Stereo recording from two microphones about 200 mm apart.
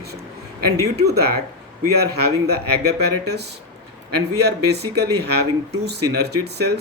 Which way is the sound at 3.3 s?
55° right (ahead or behind).